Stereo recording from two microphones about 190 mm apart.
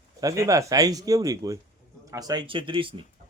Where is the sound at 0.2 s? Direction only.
15° right (ahead or behind).